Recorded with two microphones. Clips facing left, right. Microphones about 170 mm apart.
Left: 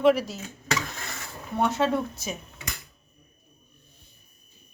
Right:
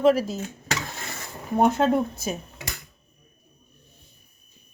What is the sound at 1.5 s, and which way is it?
Speech, 50° right (ahead or behind).